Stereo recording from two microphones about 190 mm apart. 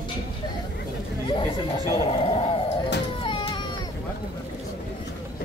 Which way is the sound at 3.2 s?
25° left (ahead or behind).